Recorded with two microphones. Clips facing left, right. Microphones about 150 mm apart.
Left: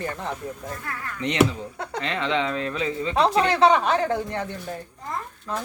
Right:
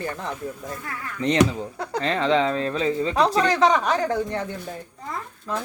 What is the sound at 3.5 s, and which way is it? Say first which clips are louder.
Speech: left 1 dB; 30° left (ahead or behind).